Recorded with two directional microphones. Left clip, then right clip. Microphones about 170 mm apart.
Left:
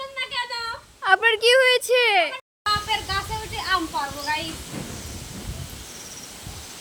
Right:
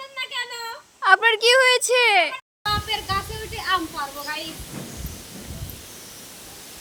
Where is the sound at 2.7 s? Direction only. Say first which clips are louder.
Left 1 dB; 15° left (ahead or behind).